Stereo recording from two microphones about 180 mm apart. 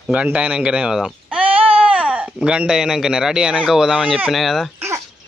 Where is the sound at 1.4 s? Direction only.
30° right (ahead or behind).